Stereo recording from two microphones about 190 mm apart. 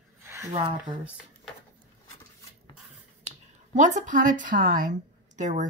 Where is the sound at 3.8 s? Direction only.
40° right (ahead or behind).